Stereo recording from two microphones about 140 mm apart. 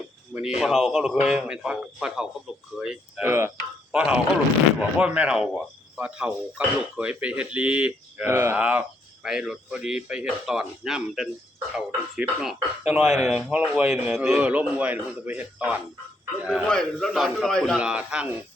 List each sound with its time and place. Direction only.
0.3 s speech: 5° right (ahead or behind)
3.2 s speech: 15° right (ahead or behind)
3.9 s speech: 5° right (ahead or behind)
16.6 s speech: 5° left (ahead or behind)
17.7 s speech: 10° right (ahead or behind)